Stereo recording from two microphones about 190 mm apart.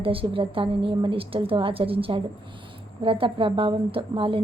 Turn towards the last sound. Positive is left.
turn(degrees=-30)  # may be behind; listen again after turning